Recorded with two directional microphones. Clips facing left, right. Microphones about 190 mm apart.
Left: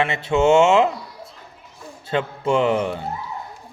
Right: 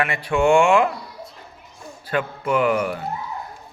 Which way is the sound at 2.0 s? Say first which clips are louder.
Left 2 dB; 25° left (ahead or behind).